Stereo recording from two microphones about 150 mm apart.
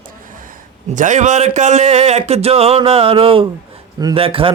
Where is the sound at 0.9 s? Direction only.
55° right (ahead or behind).